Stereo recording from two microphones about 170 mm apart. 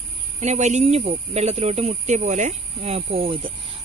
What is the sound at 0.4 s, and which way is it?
Speech, 45° right (ahead or behind).